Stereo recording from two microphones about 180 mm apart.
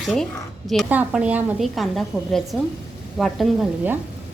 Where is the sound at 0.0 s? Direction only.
Centre (ahead or behind).